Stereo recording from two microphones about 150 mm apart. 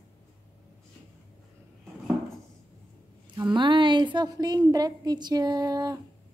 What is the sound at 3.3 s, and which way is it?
A woman's voice, 30° right (ahead or behind).